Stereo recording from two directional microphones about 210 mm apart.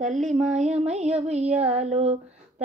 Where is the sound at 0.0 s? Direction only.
35° right (ahead or behind).